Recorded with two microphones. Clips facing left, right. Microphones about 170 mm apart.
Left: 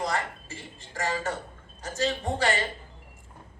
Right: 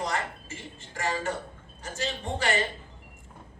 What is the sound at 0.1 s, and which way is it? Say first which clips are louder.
A man's voice: left 1 dB; 35° left (ahead or behind).